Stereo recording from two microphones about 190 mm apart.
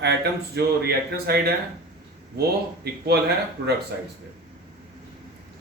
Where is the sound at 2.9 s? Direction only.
55° right (ahead or behind).